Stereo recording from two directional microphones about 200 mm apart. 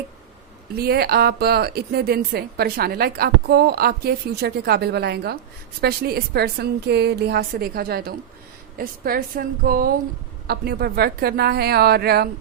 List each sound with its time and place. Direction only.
0.8 s a woman's voice: 50° right (ahead or behind)